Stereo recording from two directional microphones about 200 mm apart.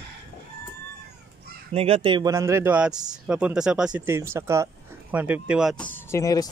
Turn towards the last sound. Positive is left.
turn(degrees=15)  # may be behind; listen again after turning